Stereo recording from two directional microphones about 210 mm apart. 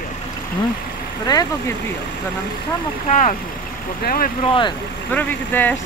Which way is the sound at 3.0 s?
35° left (ahead or behind).